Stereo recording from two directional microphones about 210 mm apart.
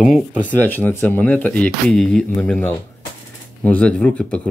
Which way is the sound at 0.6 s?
10° left (ahead or behind).